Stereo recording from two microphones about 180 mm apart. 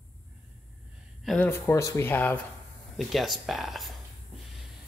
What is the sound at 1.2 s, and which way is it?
Speech, 10° left (ahead or behind).